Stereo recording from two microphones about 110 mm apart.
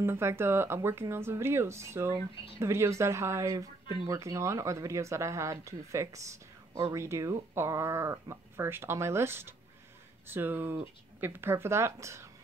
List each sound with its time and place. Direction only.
0.0 s speech: 20° right (ahead or behind)